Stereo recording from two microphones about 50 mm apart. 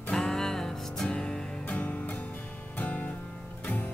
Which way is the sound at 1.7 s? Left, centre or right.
Left.